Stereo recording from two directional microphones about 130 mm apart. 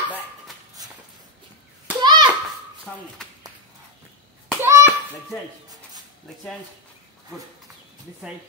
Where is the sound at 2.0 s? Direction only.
35° right (ahead or behind).